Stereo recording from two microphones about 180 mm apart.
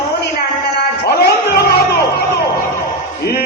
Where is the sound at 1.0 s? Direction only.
65° left (ahead or behind).